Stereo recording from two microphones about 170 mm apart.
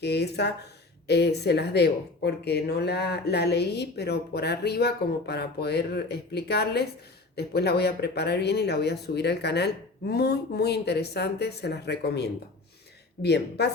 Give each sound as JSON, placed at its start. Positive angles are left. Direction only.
{"t": 0.0, "sound": "a woman's voice", "side_deg": 75}